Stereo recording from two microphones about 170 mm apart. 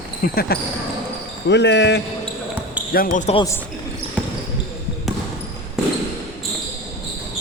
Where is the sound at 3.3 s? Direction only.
20° left (ahead or behind).